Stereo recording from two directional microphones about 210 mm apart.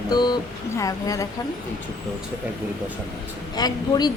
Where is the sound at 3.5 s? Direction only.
20° left (ahead or behind).